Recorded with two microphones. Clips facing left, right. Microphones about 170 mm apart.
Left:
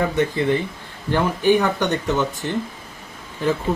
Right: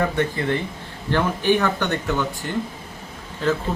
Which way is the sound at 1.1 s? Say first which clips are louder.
Left 2 dB; 15° left (ahead or behind).